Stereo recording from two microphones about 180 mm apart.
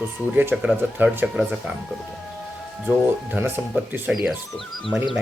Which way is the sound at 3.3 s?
10° right (ahead or behind).